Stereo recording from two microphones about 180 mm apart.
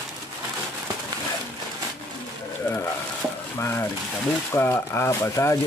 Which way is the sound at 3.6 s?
15° left (ahead or behind).